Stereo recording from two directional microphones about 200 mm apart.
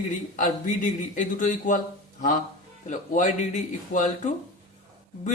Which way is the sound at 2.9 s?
35° left (ahead or behind).